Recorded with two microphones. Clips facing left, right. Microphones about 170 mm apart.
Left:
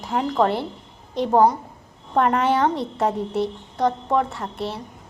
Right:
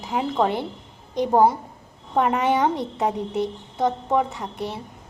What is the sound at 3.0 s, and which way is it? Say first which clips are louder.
A woman's voice: left 2 dB; centre (ahead or behind).